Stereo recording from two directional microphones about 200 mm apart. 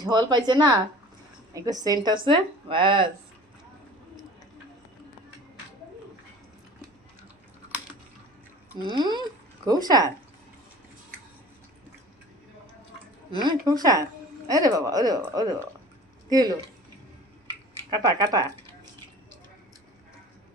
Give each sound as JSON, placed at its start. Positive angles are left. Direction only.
{"t": 0.0, "sound": "speech", "side_deg": -20}
{"t": 1.8, "sound": "speech", "side_deg": -20}
{"t": 8.8, "sound": "speech", "side_deg": -20}
{"t": 13.3, "sound": "speech", "side_deg": -25}
{"t": 17.9, "sound": "speech", "side_deg": -20}